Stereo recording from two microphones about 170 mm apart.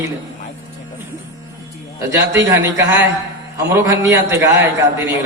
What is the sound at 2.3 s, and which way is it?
Mantra, 15° right (ahead or behind).